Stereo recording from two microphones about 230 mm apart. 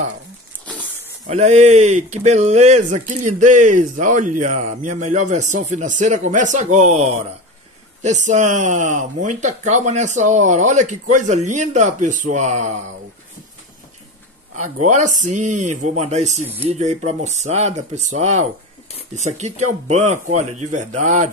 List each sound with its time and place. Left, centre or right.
0.7 s pig: centre
1.2 s speech: right
14.5 s speech: right